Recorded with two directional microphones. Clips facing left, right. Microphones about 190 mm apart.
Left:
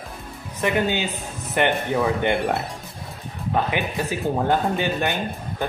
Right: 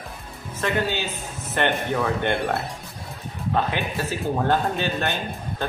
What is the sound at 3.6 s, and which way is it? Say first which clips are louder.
Speech: left 2 dB; 15° left (ahead or behind).